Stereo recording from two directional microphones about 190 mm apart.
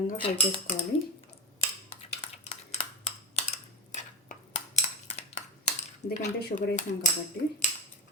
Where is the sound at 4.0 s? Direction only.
40° left (ahead or behind).